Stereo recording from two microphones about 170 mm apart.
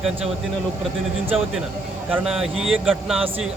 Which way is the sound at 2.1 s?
5° right (ahead or behind).